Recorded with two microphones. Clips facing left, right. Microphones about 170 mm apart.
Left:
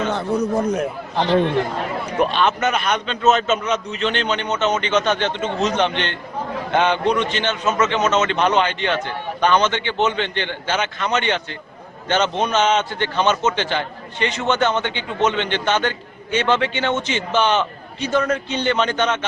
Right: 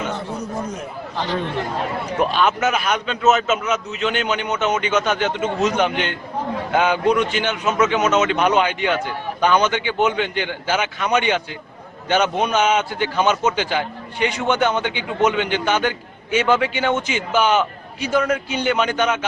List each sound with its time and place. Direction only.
2.1 s a man's voice: 5° right (ahead or behind)